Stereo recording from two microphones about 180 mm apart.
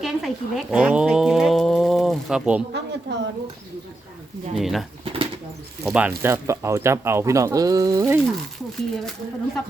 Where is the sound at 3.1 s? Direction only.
80° right.